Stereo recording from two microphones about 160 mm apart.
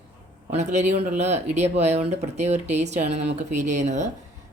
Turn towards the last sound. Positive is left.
turn(degrees=-50)  # may be behind; listen again after turning